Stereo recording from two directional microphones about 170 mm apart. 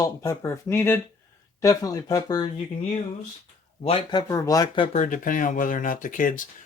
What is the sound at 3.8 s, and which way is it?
Speech, 30° left (ahead or behind).